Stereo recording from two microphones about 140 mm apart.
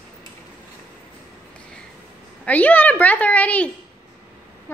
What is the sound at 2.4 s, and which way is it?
A woman's voice, 10° left (ahead or behind).